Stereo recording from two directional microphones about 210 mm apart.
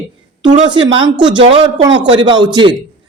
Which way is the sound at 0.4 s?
20° right (ahead or behind).